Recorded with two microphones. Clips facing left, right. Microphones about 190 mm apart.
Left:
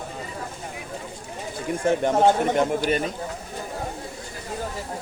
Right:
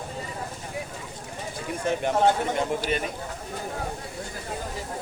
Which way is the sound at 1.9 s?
50° left (ahead or behind).